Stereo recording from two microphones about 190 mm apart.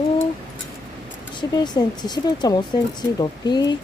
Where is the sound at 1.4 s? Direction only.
20° left (ahead or behind).